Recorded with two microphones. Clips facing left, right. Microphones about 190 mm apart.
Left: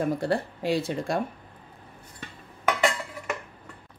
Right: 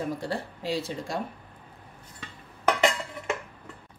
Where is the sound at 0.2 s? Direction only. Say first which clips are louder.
Left 6 dB; 55° left (ahead or behind).